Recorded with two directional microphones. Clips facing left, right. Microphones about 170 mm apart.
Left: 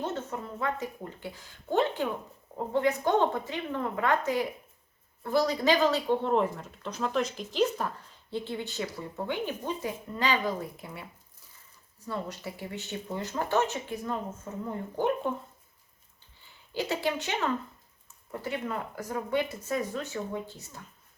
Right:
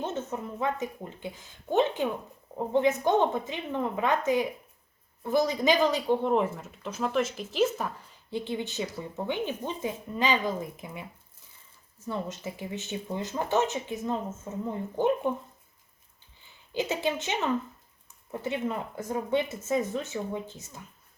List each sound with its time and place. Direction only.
0.0 s speech: 20° right (ahead or behind)
12.0 s speech: 20° right (ahead or behind)
16.7 s speech: 20° right (ahead or behind)